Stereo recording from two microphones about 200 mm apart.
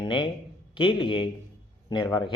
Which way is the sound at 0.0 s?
25° left (ahead or behind).